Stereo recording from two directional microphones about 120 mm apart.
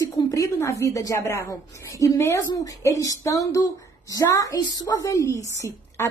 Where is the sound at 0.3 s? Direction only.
25° left (ahead or behind).